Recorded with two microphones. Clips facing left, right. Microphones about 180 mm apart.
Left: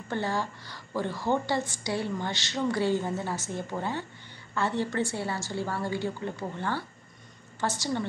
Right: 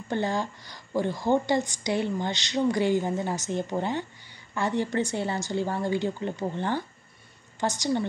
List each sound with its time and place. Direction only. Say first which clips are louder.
0.1 s a woman's voice: right 3 dB; 20° right (ahead or behind)